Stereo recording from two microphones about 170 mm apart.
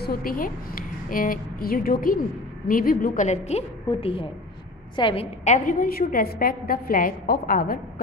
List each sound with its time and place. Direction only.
0.0 s a woman's voice: 60° left (ahead or behind)